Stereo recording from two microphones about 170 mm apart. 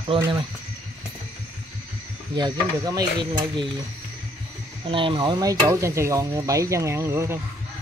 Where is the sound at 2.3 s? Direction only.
20° right (ahead or behind).